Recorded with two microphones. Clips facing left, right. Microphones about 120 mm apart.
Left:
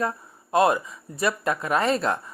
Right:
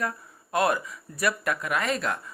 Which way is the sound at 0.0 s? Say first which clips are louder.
Left 4 dB; 25° left (ahead or behind).